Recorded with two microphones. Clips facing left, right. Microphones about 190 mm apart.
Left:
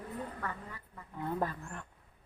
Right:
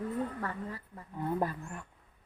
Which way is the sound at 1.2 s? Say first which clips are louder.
Right 2 dB; 10° right (ahead or behind).